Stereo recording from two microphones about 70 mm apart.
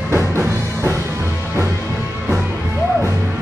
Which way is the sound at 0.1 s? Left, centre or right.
Right.